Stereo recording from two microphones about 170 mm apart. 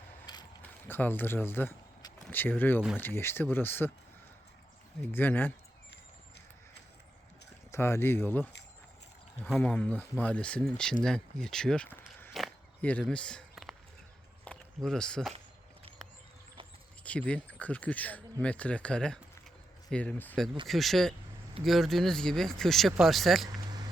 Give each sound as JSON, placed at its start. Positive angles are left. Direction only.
{"t": 0.3, "sound": "mechanisms", "side_deg": 25}
{"t": 0.6, "sound": "keys jangling", "side_deg": 10}
{"t": 2.2, "sound": "speech", "side_deg": 10}
{"t": 5.1, "sound": "speech", "side_deg": 10}
{"t": 7.7, "sound": "speech", "side_deg": 15}
{"t": 12.3, "sound": "a sound", "side_deg": 0}
{"t": 17.0, "sound": "speech", "side_deg": 10}
{"t": 23.6, "sound": "a sound", "side_deg": -25}